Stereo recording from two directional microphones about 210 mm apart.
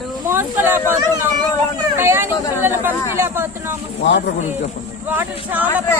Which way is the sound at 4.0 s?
55° left (ahead or behind).